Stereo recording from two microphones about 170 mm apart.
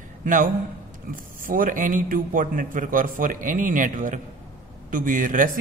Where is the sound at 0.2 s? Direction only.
50° right (ahead or behind).